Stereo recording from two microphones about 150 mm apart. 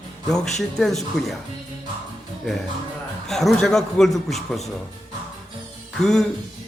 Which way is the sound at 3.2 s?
Centre (ahead or behind).